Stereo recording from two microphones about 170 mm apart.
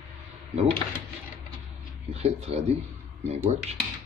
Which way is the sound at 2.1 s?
40° right (ahead or behind).